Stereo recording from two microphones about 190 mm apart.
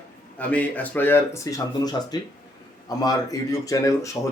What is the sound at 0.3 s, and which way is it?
Speech, 10° left (ahead or behind).